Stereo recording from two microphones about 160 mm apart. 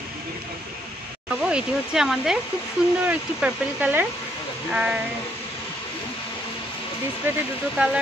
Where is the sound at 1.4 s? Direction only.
5° right (ahead or behind).